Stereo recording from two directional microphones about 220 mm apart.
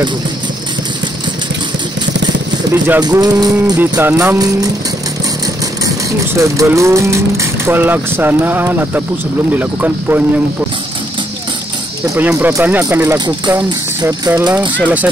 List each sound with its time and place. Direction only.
2.7 s speech: 15° right (ahead or behind)
6.3 s speech: 15° right (ahead or behind)
12.2 s speech: 10° right (ahead or behind)